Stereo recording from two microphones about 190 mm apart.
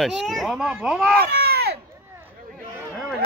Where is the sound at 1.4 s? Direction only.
55° right (ahead or behind).